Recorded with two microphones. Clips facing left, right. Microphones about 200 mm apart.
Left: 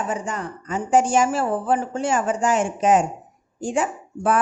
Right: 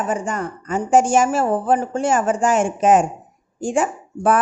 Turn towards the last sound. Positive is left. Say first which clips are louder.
# right 3 dB
turn(degrees=-50)  # may be behind; listen again after turning